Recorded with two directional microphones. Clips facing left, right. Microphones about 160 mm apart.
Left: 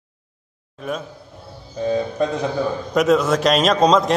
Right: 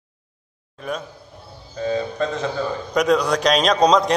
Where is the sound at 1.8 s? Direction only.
15° left (ahead or behind).